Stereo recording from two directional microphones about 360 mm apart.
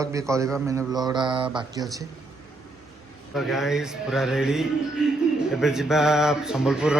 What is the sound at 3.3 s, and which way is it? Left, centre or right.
A man's voice, centre.